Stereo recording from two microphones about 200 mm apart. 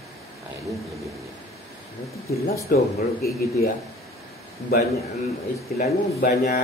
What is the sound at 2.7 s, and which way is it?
Speech, 45° left (ahead or behind).